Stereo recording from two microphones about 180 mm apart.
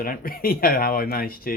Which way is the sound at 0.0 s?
55° left (ahead or behind).